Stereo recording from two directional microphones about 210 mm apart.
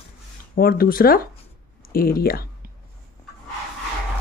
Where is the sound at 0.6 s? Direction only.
45° left (ahead or behind).